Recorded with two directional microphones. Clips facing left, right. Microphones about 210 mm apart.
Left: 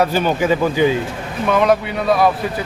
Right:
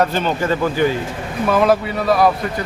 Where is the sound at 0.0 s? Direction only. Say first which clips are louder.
Left 2 dB; 10° left (ahead or behind).